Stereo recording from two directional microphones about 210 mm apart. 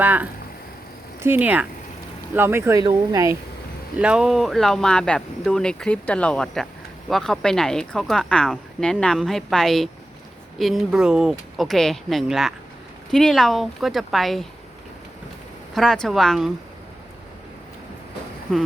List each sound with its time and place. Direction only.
0.0 s speech: 10° right (ahead or behind)
3.9 s speech: 5° right (ahead or behind)
15.7 s speech: centre (ahead or behind)